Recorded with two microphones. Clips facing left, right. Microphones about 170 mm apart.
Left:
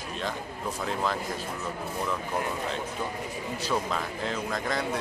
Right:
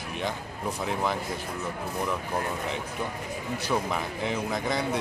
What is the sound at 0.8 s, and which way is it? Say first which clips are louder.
Speech: right 1 dB; 15° right (ahead or behind).